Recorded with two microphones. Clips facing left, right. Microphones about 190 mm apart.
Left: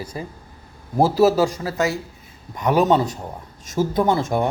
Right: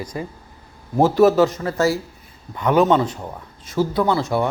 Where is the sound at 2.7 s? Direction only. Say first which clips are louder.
Right 1 dB; 35° left (ahead or behind).